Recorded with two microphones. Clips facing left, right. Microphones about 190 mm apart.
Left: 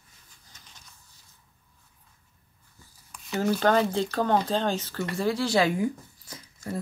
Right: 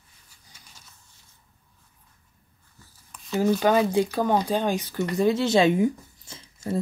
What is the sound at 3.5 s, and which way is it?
Speech, 10° right (ahead or behind).